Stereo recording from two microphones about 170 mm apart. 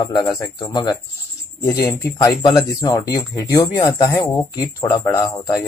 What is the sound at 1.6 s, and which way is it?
Speech, 15° left (ahead or behind).